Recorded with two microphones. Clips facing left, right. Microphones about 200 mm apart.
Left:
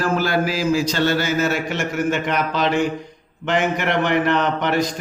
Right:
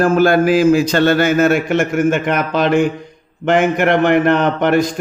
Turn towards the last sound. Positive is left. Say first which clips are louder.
# right 6 dB
turn(degrees=-50)  # may be behind; listen again after turning